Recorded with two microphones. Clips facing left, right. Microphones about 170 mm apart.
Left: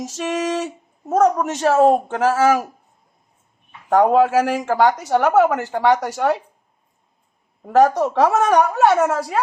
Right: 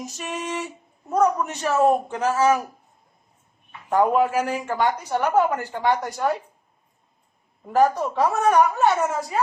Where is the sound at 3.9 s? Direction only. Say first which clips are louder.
Left 5 dB; 85° left.